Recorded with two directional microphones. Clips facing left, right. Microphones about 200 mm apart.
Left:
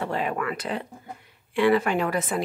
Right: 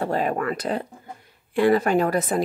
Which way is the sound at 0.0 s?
40° right (ahead or behind).